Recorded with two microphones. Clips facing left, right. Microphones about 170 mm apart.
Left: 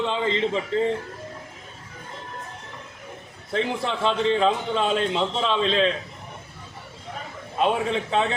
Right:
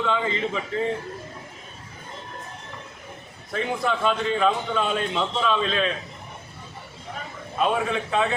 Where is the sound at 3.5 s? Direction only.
25° left (ahead or behind).